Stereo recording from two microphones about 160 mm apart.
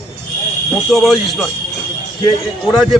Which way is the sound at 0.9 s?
Centre (ahead or behind).